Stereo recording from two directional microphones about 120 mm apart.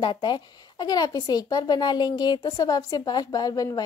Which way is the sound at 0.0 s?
40° left (ahead or behind).